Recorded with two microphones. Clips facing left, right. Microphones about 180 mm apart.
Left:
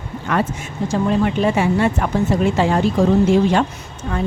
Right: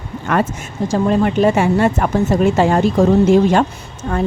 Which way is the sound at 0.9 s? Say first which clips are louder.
Right 3 dB; 45° right (ahead or behind).